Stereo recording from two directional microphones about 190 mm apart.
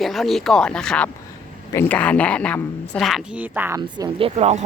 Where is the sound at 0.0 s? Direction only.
Centre (ahead or behind).